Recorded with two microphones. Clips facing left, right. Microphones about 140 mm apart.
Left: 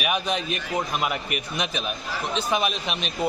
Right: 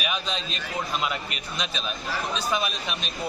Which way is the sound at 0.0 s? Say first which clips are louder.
Left 5 dB; 55° left (ahead or behind).